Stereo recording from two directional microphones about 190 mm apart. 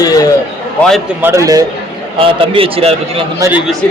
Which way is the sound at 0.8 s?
Centre (ahead or behind).